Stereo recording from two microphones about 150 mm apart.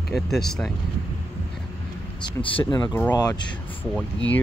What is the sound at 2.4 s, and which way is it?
Speech, 30° left (ahead or behind).